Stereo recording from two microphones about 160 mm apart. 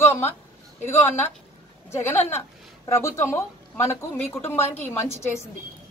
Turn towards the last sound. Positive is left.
turn(degrees=15)  # may be behind; listen again after turning